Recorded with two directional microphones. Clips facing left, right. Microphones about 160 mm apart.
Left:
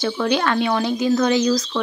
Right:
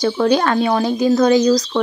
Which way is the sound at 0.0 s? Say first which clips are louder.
Right 5 dB; 40° right (ahead or behind).